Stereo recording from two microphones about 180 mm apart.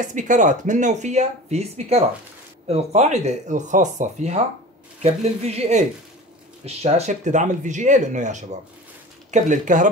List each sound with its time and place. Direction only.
0.0 s speech: 45° right (ahead or behind)